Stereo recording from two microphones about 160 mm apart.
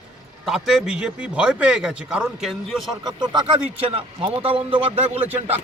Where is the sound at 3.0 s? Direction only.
25° right (ahead or behind).